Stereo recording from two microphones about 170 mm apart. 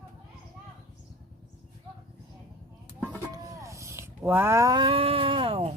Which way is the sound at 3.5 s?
20° right (ahead or behind).